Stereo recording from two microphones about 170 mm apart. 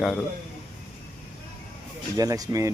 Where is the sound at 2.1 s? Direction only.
20° right (ahead or behind).